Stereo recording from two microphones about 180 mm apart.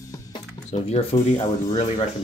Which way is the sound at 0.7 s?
35° left (ahead or behind).